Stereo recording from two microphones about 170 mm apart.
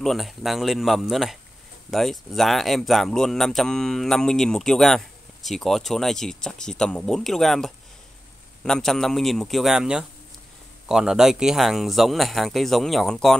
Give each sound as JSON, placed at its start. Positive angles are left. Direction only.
{"t": 0.0, "sound": "speech", "side_deg": 0}